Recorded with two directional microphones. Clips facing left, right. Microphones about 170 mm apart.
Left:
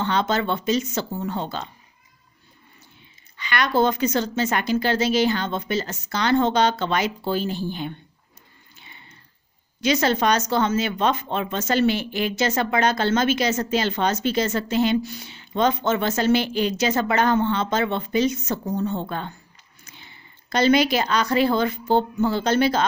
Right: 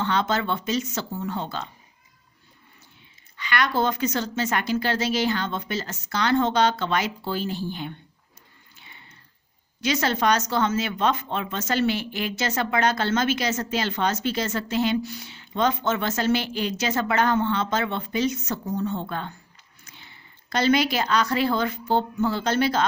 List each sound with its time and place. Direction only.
0.0 s speech: 20° left (ahead or behind)
3.3 s speech: 20° left (ahead or behind)
9.8 s a woman's voice: 20° left (ahead or behind)